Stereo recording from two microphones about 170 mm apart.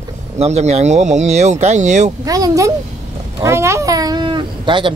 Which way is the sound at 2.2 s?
20° right (ahead or behind).